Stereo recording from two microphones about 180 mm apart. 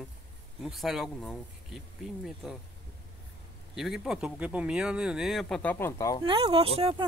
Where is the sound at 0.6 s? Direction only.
Centre (ahead or behind).